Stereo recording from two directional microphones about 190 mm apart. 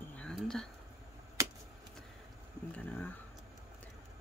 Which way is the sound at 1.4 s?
15° right (ahead or behind).